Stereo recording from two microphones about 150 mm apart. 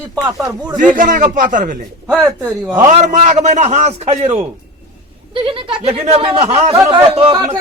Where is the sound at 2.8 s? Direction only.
55° right (ahead or behind); by 7.5 s 35° right (ahead or behind).